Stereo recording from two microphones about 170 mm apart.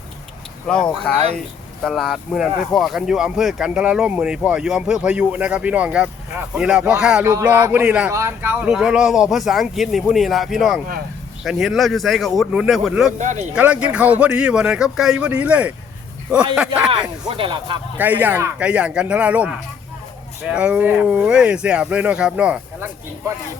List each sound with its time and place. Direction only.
1.1 s speech: 5° left (ahead or behind)
7.3 s speech: 15° right (ahead or behind)
13.1 s speech: 45° right (ahead or behind)
13.6 s speech: 10° right (ahead or behind)
16.9 s speech: 25° right (ahead or behind)
17.9 s speech: 10° right (ahead or behind)